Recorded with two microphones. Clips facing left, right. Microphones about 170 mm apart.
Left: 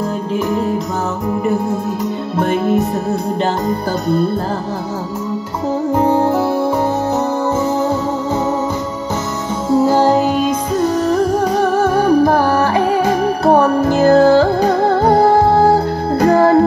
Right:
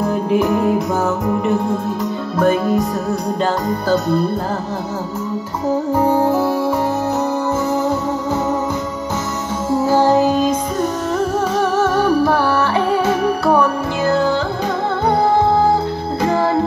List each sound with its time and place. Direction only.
0.3 s music: 15° right (ahead or behind)
2.3 s music: 25° left (ahead or behind)
11.1 s music: 40° left (ahead or behind)